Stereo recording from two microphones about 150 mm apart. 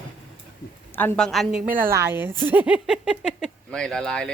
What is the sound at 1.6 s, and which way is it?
Speech, 65° right (ahead or behind).